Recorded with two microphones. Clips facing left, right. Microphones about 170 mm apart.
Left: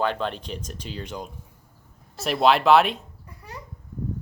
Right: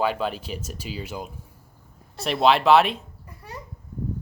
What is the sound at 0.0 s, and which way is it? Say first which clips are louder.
Speech: right 1 dB; 5° right (ahead or behind).